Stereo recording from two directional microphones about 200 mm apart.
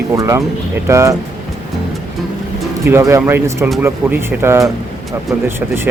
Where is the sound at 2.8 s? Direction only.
15° right (ahead or behind).